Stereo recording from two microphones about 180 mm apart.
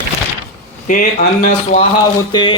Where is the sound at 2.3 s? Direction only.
25° left (ahead or behind).